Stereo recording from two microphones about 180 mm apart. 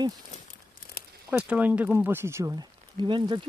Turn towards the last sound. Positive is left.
turn(degrees=-25)  # may be behind; listen again after turning